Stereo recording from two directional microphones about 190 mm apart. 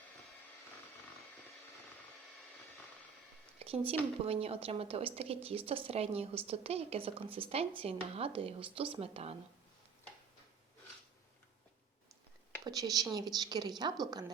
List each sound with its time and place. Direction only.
3.6 s speech: 30° right (ahead or behind)
12.6 s speech: 20° right (ahead or behind)